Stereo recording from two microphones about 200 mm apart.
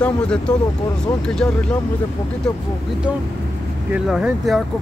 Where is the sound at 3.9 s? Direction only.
5° right (ahead or behind).